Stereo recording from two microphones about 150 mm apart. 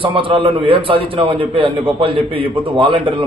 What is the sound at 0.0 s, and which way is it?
A man's voice, 35° right (ahead or behind).